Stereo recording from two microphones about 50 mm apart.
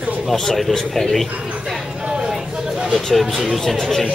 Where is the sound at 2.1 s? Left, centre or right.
Centre.